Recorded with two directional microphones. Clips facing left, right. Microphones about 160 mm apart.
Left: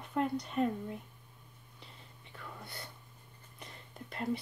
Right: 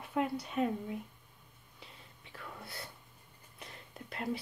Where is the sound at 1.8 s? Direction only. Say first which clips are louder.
Right 1 dB; centre (ahead or behind).